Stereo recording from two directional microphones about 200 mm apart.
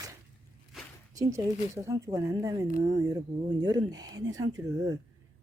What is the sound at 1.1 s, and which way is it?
Speech, 15° right (ahead or behind).